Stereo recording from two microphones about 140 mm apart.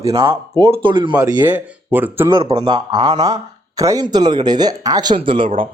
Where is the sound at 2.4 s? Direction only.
40° right (ahead or behind).